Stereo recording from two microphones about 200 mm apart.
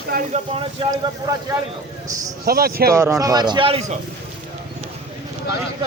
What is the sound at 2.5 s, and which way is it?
Speech, 50° right (ahead or behind).